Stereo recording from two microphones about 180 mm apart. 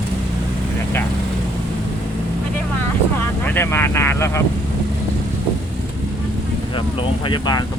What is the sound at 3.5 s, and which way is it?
Speech, 15° left (ahead or behind).